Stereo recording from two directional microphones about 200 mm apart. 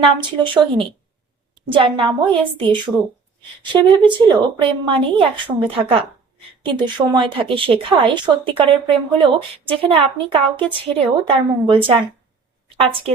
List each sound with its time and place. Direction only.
0.0 s speech: 25° right (ahead or behind)